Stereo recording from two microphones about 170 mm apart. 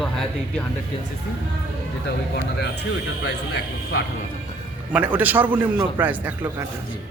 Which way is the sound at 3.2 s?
90° left.